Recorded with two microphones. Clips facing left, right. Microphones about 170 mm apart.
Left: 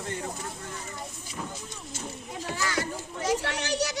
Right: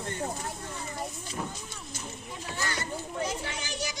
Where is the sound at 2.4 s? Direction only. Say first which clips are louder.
Left 4 dB; 90° left; by 4.0 s 70° left (ahead or behind).